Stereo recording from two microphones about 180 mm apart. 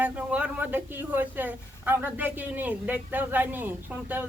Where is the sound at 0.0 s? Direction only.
5° right (ahead or behind).